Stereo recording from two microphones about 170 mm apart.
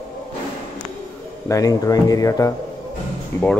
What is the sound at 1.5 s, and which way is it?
Speech, 20° left (ahead or behind).